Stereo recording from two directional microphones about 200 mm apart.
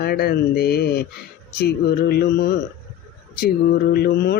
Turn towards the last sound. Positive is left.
turn(degrees=50)  # may be behind; listen again after turning